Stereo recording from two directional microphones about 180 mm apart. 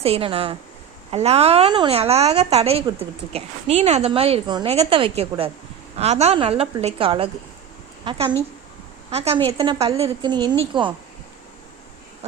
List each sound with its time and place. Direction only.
0.0 s a woman's voice: 35° right (ahead or behind)